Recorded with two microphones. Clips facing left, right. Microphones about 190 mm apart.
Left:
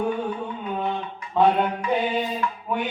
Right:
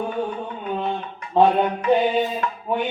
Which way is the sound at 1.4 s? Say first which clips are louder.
Right 3 dB; 30° right (ahead or behind).